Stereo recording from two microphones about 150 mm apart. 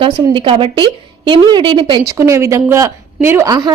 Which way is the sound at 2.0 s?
20° right (ahead or behind).